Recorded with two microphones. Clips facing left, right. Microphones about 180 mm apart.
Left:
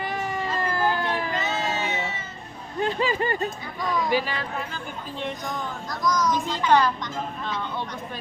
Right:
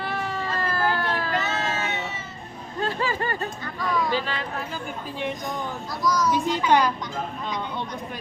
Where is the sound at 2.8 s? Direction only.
15° left (ahead or behind).